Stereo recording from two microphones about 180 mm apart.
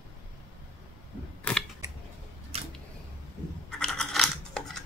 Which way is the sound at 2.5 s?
35° right (ahead or behind).